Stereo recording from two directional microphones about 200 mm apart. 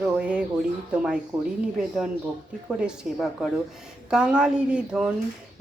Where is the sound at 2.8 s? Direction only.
Centre (ahead or behind).